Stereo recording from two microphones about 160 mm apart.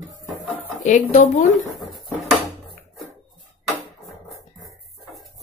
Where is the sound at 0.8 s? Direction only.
50° left (ahead or behind).